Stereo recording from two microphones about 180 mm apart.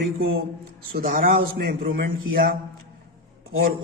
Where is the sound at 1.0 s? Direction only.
50° right (ahead or behind).